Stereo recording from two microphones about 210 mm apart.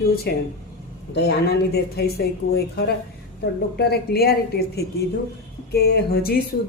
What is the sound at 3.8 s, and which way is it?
A woman's voice, 50° left (ahead or behind).